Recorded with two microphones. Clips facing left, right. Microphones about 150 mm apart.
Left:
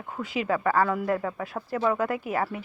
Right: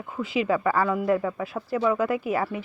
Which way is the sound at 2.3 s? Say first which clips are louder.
Right 2 dB; 20° right (ahead or behind).